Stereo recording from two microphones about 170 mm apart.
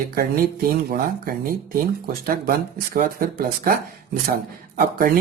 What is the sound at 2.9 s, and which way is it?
Speech, 60° right (ahead or behind).